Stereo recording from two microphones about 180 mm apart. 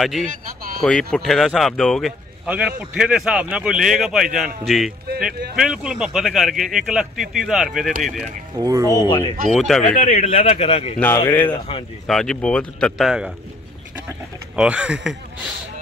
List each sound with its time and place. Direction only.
0.0 s speech: centre (ahead or behind)
8.5 s speech: 20° right (ahead or behind)
8.9 s speech: 25° left (ahead or behind)
9.5 s speech: centre (ahead or behind)
10.0 s speech: 35° left (ahead or behind)
11.1 s speech: 15° left (ahead or behind)
11.5 s speech: 30° left (ahead or behind)
12.1 s speech: 5° left (ahead or behind)
14.5 s speech: 5° right (ahead or behind)